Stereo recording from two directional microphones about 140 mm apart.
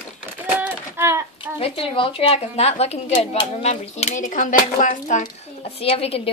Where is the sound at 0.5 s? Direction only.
15° right (ahead or behind).